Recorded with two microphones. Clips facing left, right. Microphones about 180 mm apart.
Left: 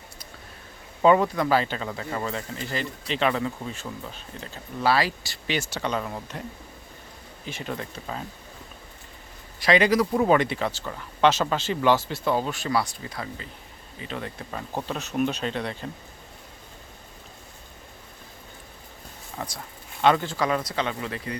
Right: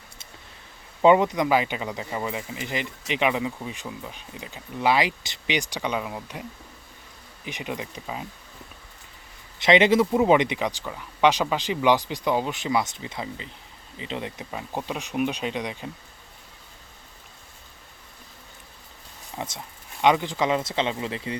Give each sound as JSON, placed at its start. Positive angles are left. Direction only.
{"t": 1.0, "sound": "speech", "side_deg": -20}
{"t": 7.4, "sound": "speech", "side_deg": -15}
{"t": 9.6, "sound": "speech", "side_deg": -20}
{"t": 19.4, "sound": "speech", "side_deg": -20}